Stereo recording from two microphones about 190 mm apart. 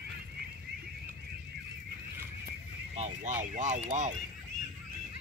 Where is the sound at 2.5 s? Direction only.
35° right (ahead or behind).